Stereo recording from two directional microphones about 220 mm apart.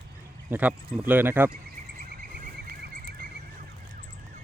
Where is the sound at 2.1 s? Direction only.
40° right (ahead or behind).